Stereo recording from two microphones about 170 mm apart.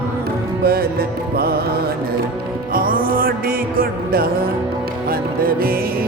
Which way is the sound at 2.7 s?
55° right (ahead or behind).